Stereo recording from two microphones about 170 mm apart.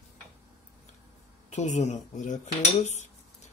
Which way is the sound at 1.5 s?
45° left (ahead or behind).